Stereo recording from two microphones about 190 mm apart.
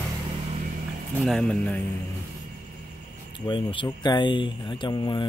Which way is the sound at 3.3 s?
25° left (ahead or behind).